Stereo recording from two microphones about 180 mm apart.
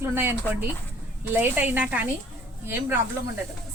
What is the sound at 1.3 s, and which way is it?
A woman's voice, 10° right (ahead or behind).